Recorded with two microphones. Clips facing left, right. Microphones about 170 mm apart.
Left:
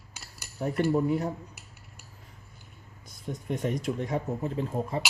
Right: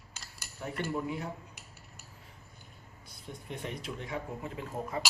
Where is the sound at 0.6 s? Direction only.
40° left (ahead or behind).